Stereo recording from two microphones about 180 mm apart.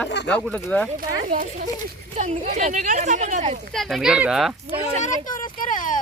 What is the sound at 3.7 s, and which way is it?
Speech, centre (ahead or behind).